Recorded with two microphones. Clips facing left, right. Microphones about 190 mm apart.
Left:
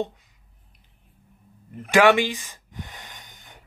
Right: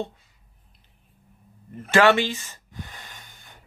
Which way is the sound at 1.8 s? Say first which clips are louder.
Left 1 dB; 15° left (ahead or behind).